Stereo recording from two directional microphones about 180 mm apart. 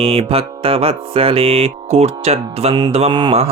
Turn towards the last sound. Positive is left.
turn(degrees=-25)  # may be behind; listen again after turning